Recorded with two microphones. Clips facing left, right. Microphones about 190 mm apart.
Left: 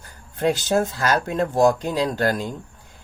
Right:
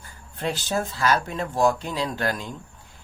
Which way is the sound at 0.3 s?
50° left (ahead or behind).